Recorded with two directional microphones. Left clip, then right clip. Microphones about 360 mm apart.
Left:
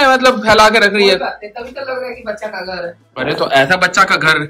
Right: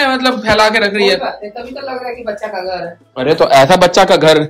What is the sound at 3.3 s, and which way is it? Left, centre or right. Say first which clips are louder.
Speech: right 5 dB; right.